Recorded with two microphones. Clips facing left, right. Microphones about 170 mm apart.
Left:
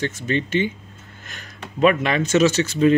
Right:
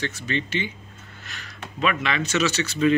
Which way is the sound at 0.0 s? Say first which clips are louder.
Left 5 dB; 45° left (ahead or behind).